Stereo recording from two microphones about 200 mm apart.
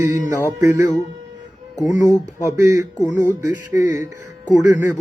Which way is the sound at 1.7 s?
40° left (ahead or behind).